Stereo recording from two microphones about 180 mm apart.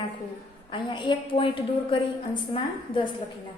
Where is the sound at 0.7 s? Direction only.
25° left (ahead or behind).